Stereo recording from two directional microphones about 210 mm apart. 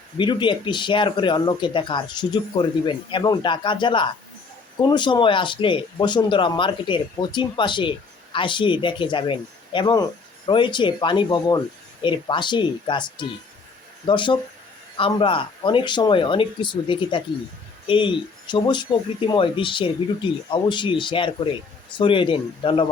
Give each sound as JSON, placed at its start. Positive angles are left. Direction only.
{"t": 0.2, "sound": "speech", "side_deg": 20}